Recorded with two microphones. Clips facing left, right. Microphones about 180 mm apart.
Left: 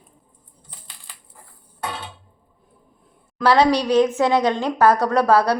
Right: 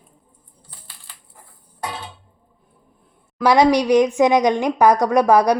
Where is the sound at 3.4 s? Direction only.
10° right (ahead or behind).